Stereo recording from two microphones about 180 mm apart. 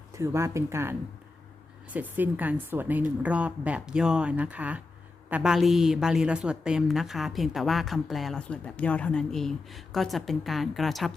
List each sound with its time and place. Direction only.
0.2 s a woman's voice: 15° right (ahead or behind); by 11.1 s centre (ahead or behind)